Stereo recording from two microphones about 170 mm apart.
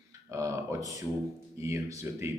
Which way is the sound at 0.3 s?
20° right (ahead or behind).